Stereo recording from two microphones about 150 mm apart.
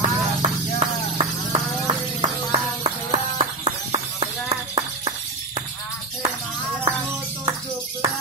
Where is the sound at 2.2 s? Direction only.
45° right (ahead or behind).